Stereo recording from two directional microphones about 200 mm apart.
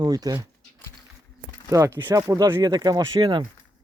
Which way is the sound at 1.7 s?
15° right (ahead or behind).